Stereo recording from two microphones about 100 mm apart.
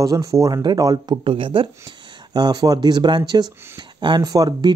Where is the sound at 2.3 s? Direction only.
45° right (ahead or behind).